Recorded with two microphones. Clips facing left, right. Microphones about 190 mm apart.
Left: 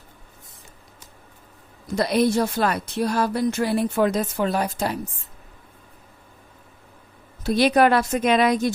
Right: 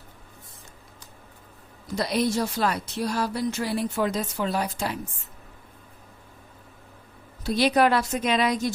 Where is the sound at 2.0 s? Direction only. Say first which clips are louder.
Left 5 dB; 55° left (ahead or behind).